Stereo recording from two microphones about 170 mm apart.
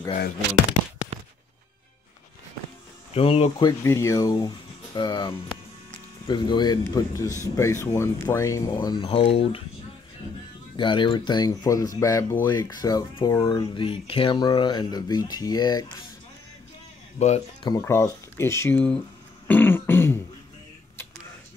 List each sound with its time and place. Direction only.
3.2 s speech: 35° left (ahead or behind)
3.8 s speech: 15° left (ahead or behind); by 9.6 s 35° left (ahead or behind)
10.8 s speech: 30° left (ahead or behind)
13.7 s speech: 30° left (ahead or behind)
17.2 s speech: 40° left (ahead or behind)
17.6 s speech: 15° left (ahead or behind)
19.4 s throat clearing: 10° left (ahead or behind)